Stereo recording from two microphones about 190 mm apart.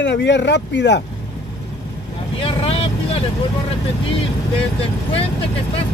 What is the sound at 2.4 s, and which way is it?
Vehicle, 30° left (ahead or behind).